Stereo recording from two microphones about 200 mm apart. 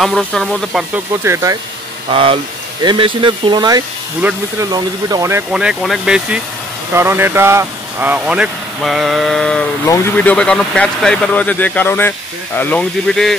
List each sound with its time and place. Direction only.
0.0 s speech: 5° left (ahead or behind); by 1.6 s 15° right (ahead or behind)
2.0 s speech: 30° right (ahead or behind)
4.2 s speech: 10° right (ahead or behind)
4.6 s speech: 20° right (ahead or behind)
5.5 s speech: 5° right (ahead or behind)